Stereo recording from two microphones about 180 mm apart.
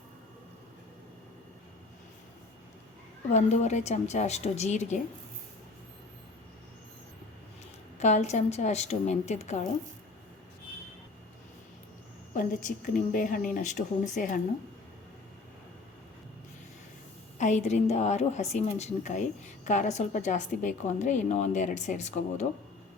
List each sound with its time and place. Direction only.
3.3 s a woman's voice: 40° left (ahead or behind)
7.9 s a woman's voice: 40° left (ahead or behind)
12.3 s speech: 50° left (ahead or behind)
17.3 s a woman's voice: 40° left (ahead or behind)